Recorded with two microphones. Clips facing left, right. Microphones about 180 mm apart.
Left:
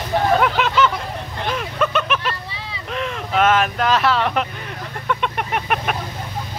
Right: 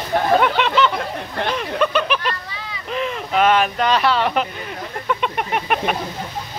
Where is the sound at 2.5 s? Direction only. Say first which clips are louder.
Even; 30° left (ahead or behind).